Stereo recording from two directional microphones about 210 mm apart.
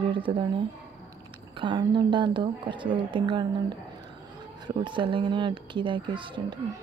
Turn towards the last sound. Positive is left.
turn(degrees=-25)  # may be behind; listen again after turning